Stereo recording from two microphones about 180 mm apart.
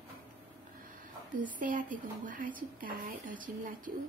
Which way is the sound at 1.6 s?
50° right (ahead or behind).